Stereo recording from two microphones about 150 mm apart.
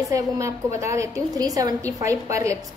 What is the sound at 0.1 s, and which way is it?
A woman's voice, 20° right (ahead or behind).